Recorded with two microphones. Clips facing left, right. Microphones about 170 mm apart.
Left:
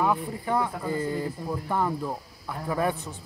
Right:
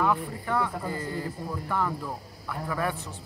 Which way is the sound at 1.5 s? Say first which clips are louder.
Left 2 dB; 20° left (ahead or behind).